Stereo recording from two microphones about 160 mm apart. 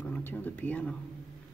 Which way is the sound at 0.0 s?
10° left (ahead or behind).